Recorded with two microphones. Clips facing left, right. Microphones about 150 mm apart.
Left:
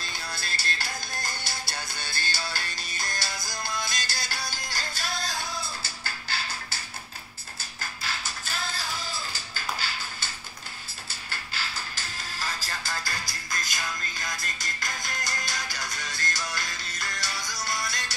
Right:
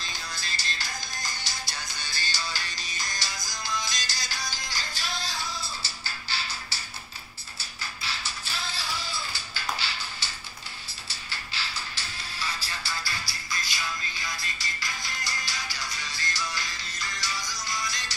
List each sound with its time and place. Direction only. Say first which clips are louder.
0.0 s music: left 2 dB; 60° left (ahead or behind)
7.8 s music: left 1 dB; 50° left (ahead or behind)